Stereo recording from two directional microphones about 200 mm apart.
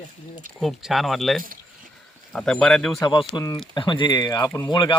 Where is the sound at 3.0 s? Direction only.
25° left (ahead or behind).